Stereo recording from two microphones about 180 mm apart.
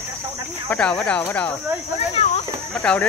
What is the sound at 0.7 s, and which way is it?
Speech, 5° left (ahead or behind).